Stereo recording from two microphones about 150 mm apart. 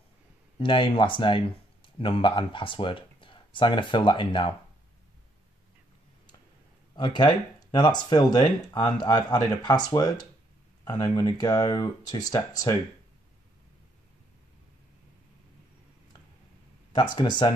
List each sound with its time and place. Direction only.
0.6 s speech: 35° left (ahead or behind)
7.0 s speech: 30° left (ahead or behind)
16.9 s speech: 30° left (ahead or behind)